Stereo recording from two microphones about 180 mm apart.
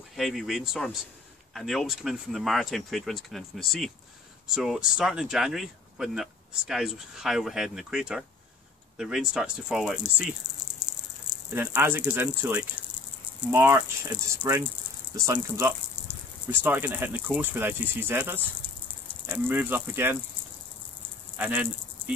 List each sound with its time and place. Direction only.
0.1 s speech: centre (ahead or behind)
11.5 s speech: 10° right (ahead or behind)
21.4 s a sound: 10° right (ahead or behind)